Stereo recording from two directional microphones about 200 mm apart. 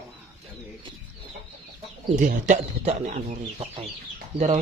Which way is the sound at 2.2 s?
40° right (ahead or behind).